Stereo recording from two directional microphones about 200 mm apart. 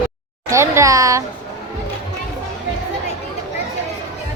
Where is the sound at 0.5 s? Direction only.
15° right (ahead or behind).